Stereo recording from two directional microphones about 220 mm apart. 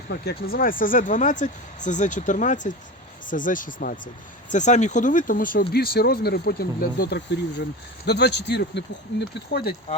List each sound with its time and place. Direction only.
0.1 s speech: 45° left (ahead or behind)